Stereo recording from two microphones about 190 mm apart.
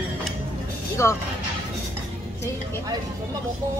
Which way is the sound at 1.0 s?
15° left (ahead or behind).